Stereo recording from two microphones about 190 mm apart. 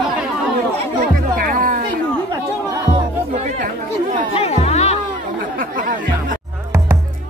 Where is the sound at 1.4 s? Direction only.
45° right (ahead or behind).